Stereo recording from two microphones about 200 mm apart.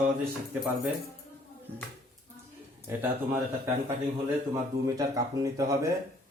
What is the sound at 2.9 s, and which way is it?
Speech, 10° right (ahead or behind).